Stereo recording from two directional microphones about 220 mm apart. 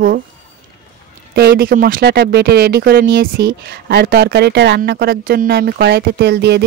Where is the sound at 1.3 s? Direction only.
45° right (ahead or behind).